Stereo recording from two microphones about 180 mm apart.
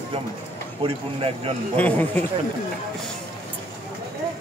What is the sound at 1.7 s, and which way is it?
Speech, 10° left (ahead or behind).